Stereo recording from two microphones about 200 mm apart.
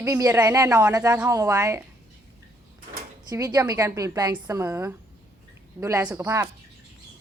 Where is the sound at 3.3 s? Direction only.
15° right (ahead or behind).